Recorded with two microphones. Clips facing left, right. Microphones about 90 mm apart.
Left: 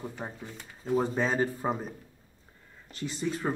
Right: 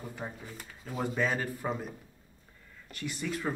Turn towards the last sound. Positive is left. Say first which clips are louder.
# left 3 dB
turn(degrees=30)  # may be behind; listen again after turning